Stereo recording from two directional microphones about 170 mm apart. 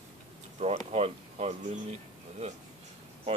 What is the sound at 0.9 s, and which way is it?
Speech, 35° right (ahead or behind).